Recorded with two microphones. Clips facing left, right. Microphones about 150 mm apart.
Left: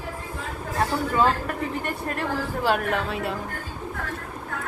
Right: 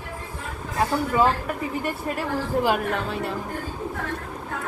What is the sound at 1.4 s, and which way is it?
A woman's voice, 5° right (ahead or behind).